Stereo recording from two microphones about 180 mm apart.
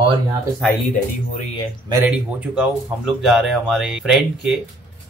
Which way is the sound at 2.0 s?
5° right (ahead or behind).